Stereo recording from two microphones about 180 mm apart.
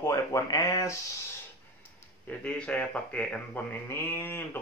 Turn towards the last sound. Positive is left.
turn(degrees=10)  # may be behind; listen again after turning